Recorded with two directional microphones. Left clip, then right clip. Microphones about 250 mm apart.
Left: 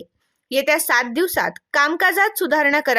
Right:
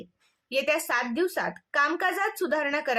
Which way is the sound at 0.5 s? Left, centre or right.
Left.